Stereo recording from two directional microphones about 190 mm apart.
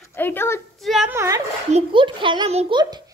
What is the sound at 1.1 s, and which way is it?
Speech, 15° right (ahead or behind).